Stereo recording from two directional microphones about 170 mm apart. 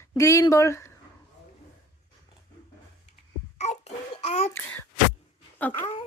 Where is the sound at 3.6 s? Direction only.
40° left (ahead or behind).